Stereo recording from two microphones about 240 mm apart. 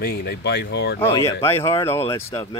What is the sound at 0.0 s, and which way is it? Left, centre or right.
Speech, left.